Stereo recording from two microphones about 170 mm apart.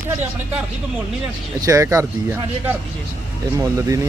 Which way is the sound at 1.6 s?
20° right (ahead or behind).